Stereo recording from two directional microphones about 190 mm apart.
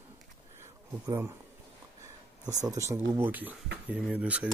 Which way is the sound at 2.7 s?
15° right (ahead or behind).